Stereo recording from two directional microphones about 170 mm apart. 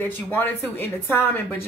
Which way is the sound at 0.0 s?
10° left (ahead or behind).